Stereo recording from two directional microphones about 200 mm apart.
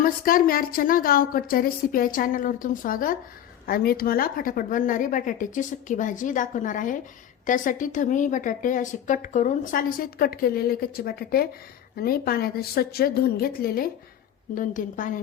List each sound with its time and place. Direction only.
0.0 s a woman's voice: 45° left (ahead or behind)